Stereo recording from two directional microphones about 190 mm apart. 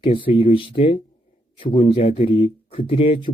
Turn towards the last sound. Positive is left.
turn(degrees=30)  # may be behind; listen again after turning